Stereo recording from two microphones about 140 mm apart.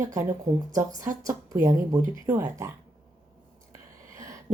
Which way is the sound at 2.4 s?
15° right (ahead or behind).